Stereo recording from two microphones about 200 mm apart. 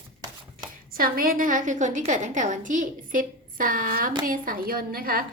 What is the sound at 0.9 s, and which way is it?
A woman's voice, 45° right (ahead or behind).